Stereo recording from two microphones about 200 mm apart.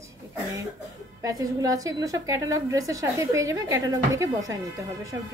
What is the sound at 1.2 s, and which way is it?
A woman's voice, 15° right (ahead or behind).